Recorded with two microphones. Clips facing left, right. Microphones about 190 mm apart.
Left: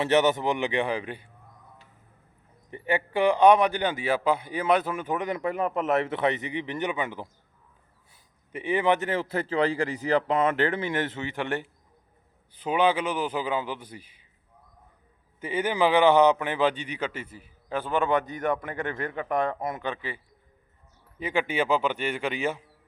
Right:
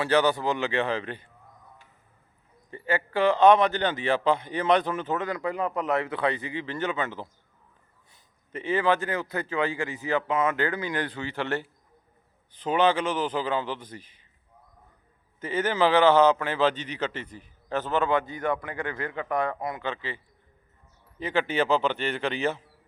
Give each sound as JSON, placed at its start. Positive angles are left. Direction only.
{"t": 0.0, "sound": "a man's voice", "side_deg": 20}
{"t": 2.6, "sound": "a man's voice", "side_deg": 20}
{"t": 15.4, "sound": "a man's voice", "side_deg": 10}
{"t": 21.2, "sound": "a man's voice", "side_deg": 10}